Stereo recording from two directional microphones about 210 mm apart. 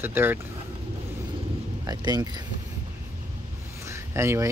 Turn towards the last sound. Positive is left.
turn(degrees=-15)  # may be behind; listen again after turning